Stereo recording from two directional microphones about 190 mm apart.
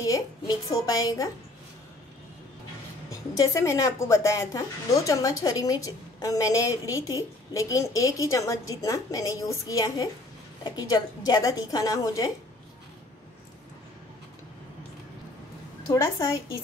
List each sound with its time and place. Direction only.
0.0 s a woman's voice: 20° left (ahead or behind)
3.1 s a woman's voice: 15° left (ahead or behind)
15.9 s a woman's voice: 15° left (ahead or behind)